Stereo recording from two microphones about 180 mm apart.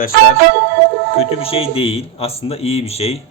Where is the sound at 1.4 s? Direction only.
30° left (ahead or behind).